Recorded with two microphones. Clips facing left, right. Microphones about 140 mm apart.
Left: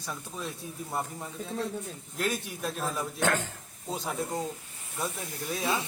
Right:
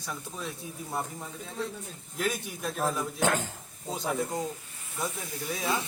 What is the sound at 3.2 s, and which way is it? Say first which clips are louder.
Speech: even; 15° right (ahead or behind).